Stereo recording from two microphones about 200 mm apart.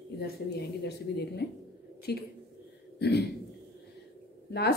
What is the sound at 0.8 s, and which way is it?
A woman's voice, 55° left (ahead or behind).